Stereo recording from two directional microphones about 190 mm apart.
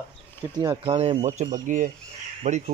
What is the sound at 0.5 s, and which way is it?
Speech, 25° right (ahead or behind).